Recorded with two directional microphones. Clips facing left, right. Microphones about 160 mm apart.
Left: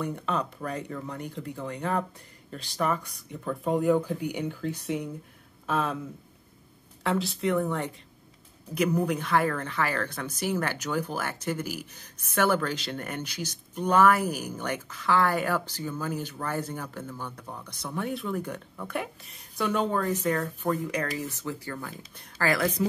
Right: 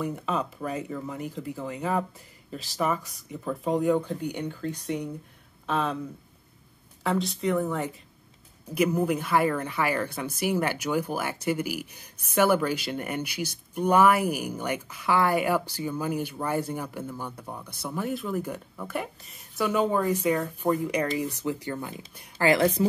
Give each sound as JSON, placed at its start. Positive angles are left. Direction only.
{"t": 0.0, "sound": "speech", "side_deg": -5}
{"t": 7.0, "sound": "speech", "side_deg": 0}
{"t": 22.5, "sound": "a woman's voice", "side_deg": -25}